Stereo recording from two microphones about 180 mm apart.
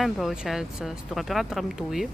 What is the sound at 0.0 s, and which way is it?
Speech, centre (ahead or behind).